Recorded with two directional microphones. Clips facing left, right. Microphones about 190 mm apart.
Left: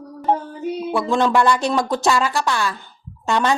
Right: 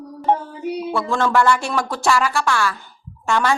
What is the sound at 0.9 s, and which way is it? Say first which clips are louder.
Speech: left 3 dB; 15° left (ahead or behind).